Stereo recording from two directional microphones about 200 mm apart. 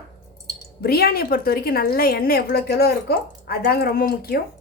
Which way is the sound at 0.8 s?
50° left (ahead or behind).